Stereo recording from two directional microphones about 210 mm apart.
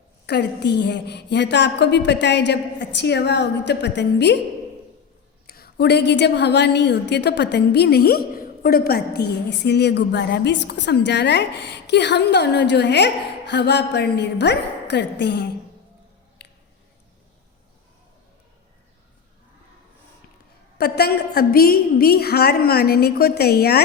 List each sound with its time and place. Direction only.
0.3 s a woman's voice: 50° left (ahead or behind)
5.5 s a woman's voice: 45° left (ahead or behind)
16.4 s a sound: 55° left (ahead or behind)
20.7 s a woman's voice: 50° left (ahead or behind)